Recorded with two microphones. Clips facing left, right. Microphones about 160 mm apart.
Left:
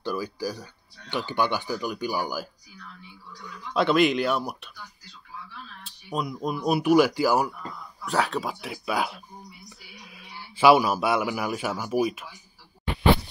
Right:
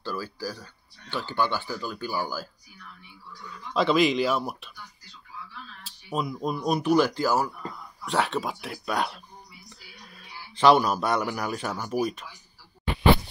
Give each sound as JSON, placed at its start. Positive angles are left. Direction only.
{"t": 0.0, "sound": "speech", "side_deg": 15}
{"t": 3.7, "sound": "speech", "side_deg": 0}
{"t": 5.9, "sound": "speech", "side_deg": 0}
{"t": 8.0, "sound": "speech", "side_deg": 0}